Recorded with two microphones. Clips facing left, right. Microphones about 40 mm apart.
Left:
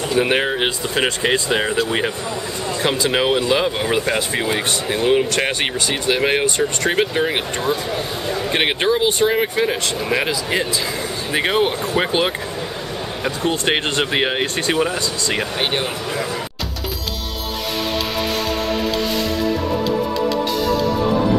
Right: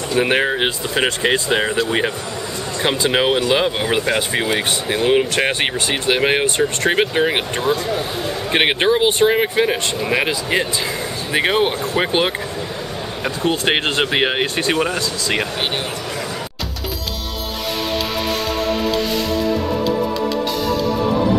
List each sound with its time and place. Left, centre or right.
0.1 s speech: centre
7.7 s speech: centre
8.5 s speech: centre
13.5 s speech: centre